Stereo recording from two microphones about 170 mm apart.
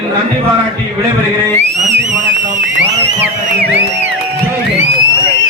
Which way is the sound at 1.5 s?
45° right (ahead or behind).